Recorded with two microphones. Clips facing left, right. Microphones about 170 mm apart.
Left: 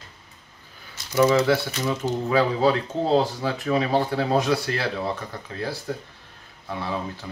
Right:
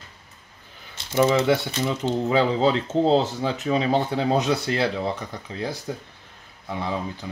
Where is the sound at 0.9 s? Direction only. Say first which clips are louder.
Left 1 dB; 25° right (ahead or behind).